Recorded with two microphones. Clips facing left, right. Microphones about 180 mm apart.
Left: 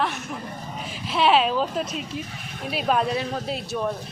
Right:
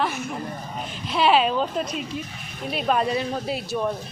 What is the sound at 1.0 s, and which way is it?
Speech, centre (ahead or behind).